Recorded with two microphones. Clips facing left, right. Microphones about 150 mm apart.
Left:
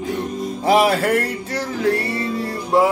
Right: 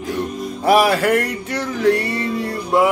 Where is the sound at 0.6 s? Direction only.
25° left (ahead or behind).